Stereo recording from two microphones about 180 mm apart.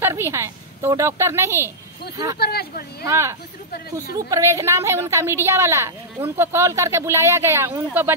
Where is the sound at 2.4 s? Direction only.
60° left (ahead or behind).